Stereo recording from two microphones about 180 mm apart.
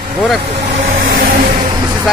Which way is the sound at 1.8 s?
15° right (ahead or behind).